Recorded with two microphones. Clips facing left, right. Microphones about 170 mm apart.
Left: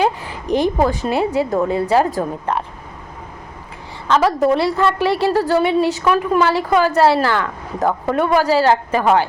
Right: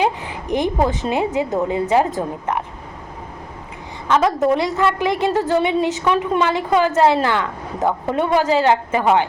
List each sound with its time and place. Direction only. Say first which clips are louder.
0.0 s a woman's voice: left 1 dB; 20° right (ahead or behind)
4.1 s a woman's voice: left 1 dB; 20° right (ahead or behind)